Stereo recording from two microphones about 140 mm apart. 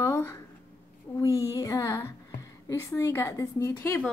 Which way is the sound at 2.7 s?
20° left (ahead or behind).